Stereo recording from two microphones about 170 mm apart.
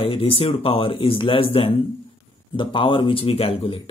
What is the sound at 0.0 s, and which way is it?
A man's voice, 35° left (ahead or behind).